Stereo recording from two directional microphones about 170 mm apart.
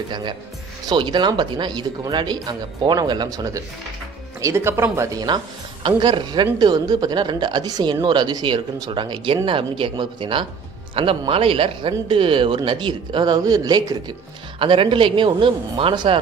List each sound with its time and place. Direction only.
0.1 s speech: 25° right (ahead or behind)